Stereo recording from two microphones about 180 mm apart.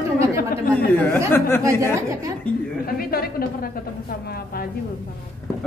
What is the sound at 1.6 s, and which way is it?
Speech, 15° right (ahead or behind).